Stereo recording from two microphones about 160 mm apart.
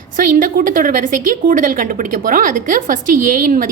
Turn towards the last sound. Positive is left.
turn(degrees=-55)  # may be behind; listen again after turning